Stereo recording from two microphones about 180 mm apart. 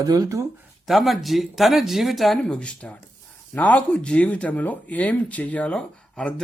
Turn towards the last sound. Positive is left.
turn(degrees=5)  # may be behind; listen again after turning